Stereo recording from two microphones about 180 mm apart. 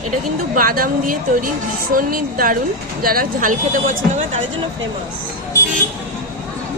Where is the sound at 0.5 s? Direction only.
55° right (ahead or behind).